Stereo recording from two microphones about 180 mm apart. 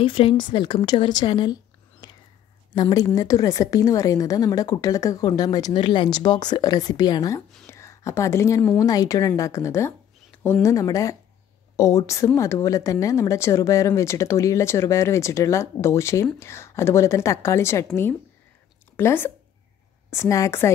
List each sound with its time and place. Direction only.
0.0 s a woman's voice: 30° left (ahead or behind)
18.9 s speech: 10° left (ahead or behind)